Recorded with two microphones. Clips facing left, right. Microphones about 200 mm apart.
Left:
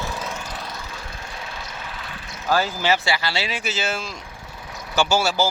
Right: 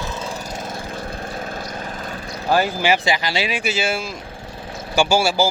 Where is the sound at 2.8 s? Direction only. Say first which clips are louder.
Right 3 dB; 15° right (ahead or behind).